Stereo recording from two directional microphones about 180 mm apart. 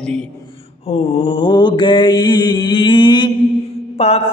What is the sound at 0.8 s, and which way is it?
Mantra, 35° left (ahead or behind).